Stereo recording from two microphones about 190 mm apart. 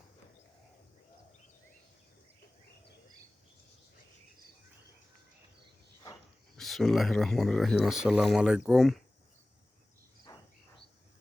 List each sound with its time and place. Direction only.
6.6 s speech: centre (ahead or behind)
10.3 s cricket: 20° left (ahead or behind)